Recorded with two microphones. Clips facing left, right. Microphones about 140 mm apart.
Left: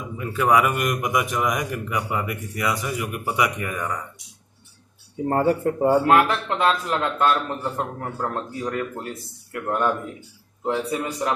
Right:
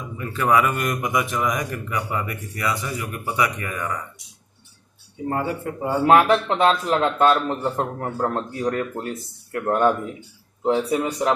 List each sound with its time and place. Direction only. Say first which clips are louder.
0.2 s a man's voice: even; 10° left (ahead or behind)
5.3 s speech: left 6 dB; 40° left (ahead or behind)
6.0 s a man's voice: right 3 dB; 20° right (ahead or behind)
10.6 s a man's voice: right 4 dB; 25° right (ahead or behind)